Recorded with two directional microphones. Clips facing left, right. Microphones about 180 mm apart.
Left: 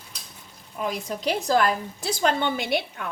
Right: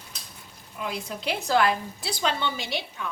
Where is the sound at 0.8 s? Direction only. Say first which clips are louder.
Left 4 dB; 40° left (ahead or behind).